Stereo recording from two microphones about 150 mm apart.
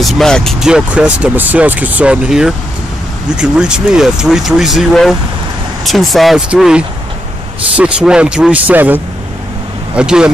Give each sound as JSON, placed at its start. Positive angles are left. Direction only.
{"t": 0.0, "sound": "speech", "side_deg": 5}